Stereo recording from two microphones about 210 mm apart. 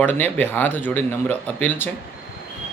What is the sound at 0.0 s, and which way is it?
Speech, 10° left (ahead or behind).